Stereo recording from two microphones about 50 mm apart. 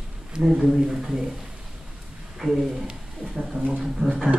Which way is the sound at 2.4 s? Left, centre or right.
Centre.